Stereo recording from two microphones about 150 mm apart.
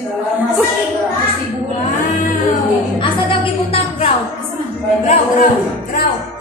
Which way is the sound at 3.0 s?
40° left (ahead or behind).